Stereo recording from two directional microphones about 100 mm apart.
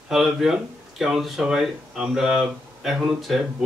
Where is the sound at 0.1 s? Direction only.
5° right (ahead or behind).